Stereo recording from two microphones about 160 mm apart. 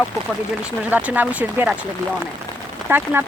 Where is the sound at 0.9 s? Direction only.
10° right (ahead or behind).